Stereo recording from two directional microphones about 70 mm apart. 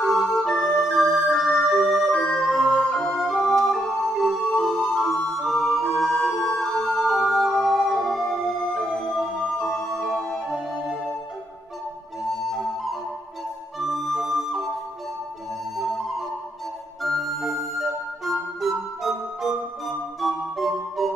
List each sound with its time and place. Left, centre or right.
0.0 s organ: centre
4.5 s music: centre
12.3 s flute: centre
17.0 s music: centre